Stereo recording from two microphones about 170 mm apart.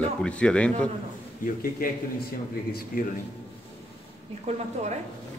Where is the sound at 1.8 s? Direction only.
60° left (ahead or behind).